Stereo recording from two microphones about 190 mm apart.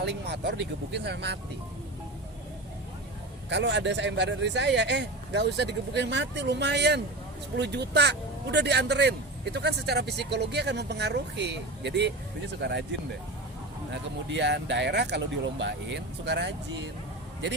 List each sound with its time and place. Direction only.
0.0 s speech: 65° right (ahead or behind)
3.5 s speech: 65° right (ahead or behind)
13.9 s speech: 70° right (ahead or behind)